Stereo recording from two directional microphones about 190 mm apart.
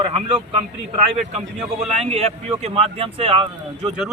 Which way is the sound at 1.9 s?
35° right (ahead or behind).